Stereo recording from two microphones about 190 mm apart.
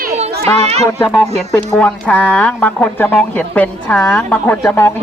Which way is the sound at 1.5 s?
5° left (ahead or behind).